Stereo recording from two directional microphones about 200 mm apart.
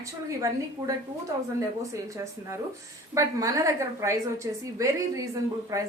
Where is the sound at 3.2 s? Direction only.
15° right (ahead or behind).